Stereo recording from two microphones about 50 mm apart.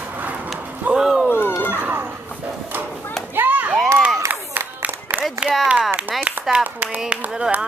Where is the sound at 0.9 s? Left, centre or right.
Centre.